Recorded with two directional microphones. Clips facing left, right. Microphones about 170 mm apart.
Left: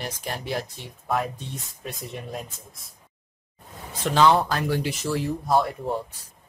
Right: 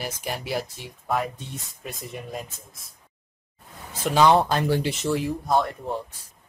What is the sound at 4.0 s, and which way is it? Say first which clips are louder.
Speech: right 1 dB; 10° right (ahead or behind).